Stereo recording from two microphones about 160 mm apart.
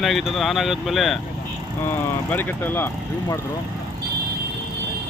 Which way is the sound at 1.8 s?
10° left (ahead or behind).